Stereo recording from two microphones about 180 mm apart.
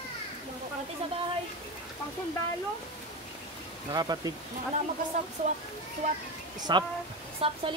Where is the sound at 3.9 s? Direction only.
20° right (ahead or behind).